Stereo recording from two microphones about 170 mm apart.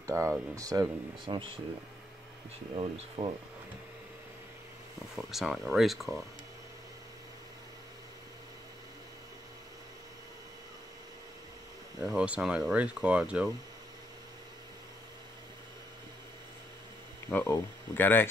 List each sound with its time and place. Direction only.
0.0 s speech: 20° right (ahead or behind)
2.7 s speech: 35° right (ahead or behind)
5.1 s speech: centre (ahead or behind)
12.1 s speech: 5° right (ahead or behind)
17.3 s speech: 10° left (ahead or behind)